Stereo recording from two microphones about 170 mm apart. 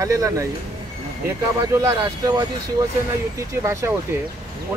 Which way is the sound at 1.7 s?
20° right (ahead or behind).